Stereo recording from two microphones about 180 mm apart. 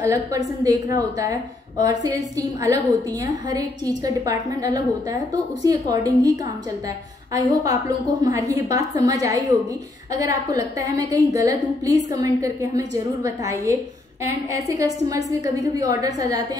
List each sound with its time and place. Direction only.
0.0 s a woman's voice: 15° right (ahead or behind)
1.9 s a woman's voice: 20° right (ahead or behind)
7.3 s a woman's voice: 20° right (ahead or behind)